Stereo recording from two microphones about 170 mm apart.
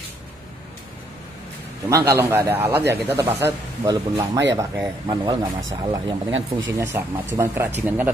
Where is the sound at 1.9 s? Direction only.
15° right (ahead or behind).